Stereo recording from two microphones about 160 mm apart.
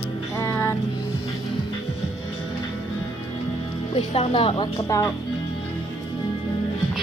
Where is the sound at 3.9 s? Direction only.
35° left (ahead or behind).